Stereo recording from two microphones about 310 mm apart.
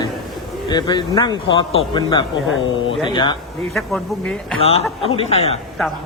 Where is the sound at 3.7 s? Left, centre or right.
Centre.